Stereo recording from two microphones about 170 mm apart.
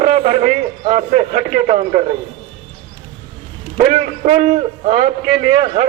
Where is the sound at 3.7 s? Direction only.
45° right (ahead or behind).